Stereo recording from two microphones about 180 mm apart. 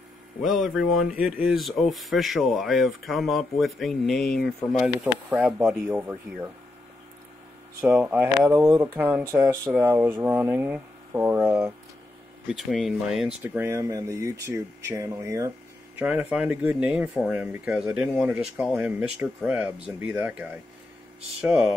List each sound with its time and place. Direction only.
0.4 s speech: centre (ahead or behind)
7.8 s speech: 10° right (ahead or behind)
12.4 s speech: centre (ahead or behind)
13.4 s speech: 15° right (ahead or behind)